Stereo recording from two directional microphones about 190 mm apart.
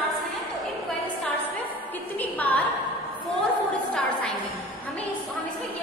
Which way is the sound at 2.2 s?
10° left (ahead or behind).